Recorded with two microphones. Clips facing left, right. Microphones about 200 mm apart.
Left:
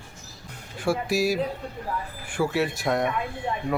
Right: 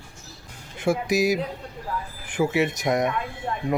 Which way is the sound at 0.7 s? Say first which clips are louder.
Right 2 dB; 20° right (ahead or behind).